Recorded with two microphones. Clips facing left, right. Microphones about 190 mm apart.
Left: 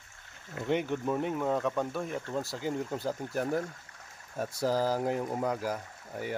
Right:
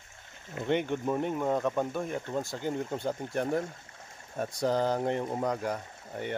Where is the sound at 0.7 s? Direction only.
Centre (ahead or behind).